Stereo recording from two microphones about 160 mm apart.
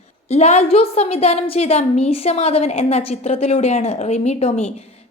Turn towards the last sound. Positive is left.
turn(degrees=40)  # may be behind; listen again after turning